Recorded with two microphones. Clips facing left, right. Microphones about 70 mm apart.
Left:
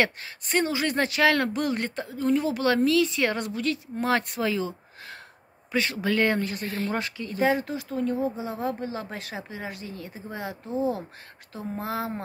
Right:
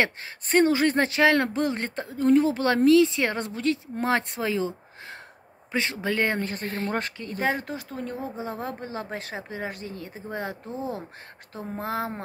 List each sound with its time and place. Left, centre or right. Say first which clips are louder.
0.0 s speech: even; right
11.7 s speech: right 1 dB; right